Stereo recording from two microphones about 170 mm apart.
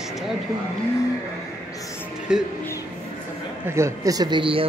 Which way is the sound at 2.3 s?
5° right (ahead or behind).